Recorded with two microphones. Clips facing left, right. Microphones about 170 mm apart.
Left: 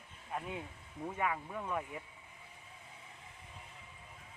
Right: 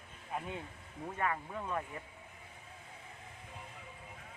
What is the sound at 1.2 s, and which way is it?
Speech, 5° left (ahead or behind).